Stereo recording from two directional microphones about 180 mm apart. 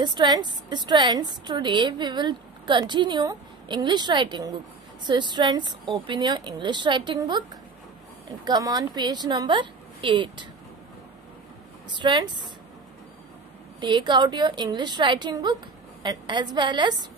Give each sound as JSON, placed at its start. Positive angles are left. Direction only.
{"t": 0.0, "sound": "a woman's voice", "side_deg": -25}
{"t": 8.5, "sound": "a woman's voice", "side_deg": -25}
{"t": 11.9, "sound": "a woman's voice", "side_deg": -25}
{"t": 13.7, "sound": "a woman's voice", "side_deg": -25}